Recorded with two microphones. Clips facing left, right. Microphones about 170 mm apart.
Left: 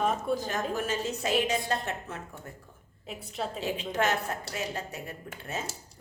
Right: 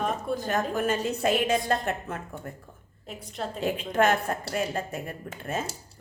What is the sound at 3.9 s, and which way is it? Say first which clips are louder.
Speech: right 6 dB; 50° right (ahead or behind).